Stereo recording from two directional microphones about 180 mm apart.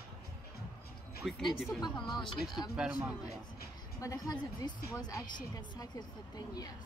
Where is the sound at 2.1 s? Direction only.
Centre (ahead or behind).